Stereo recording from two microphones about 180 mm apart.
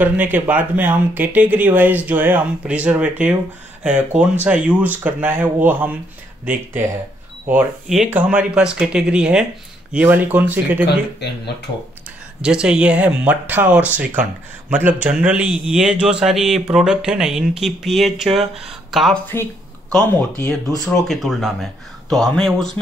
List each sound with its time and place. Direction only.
0.0 s speech: 10° right (ahead or behind)
10.9 s speech: 65° left (ahead or behind)
12.4 s speech: 5° right (ahead or behind)
20.8 s speech: centre (ahead or behind)